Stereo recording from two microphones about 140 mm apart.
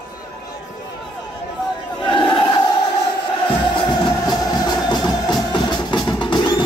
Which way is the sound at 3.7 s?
30° left (ahead or behind).